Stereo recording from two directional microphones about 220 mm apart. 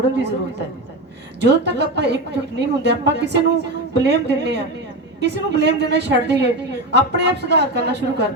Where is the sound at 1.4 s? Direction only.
50° right (ahead or behind).